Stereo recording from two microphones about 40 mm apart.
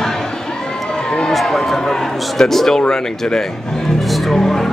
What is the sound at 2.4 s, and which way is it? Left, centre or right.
A man's voice, centre.